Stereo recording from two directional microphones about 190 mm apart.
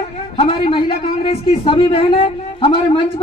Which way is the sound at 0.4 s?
30° left (ahead or behind).